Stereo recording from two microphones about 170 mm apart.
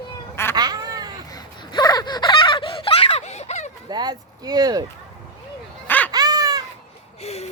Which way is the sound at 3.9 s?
25° right (ahead or behind).